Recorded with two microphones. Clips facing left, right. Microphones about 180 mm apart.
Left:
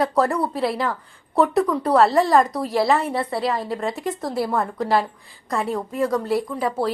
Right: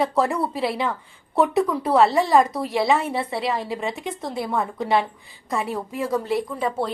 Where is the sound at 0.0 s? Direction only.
Centre (ahead or behind).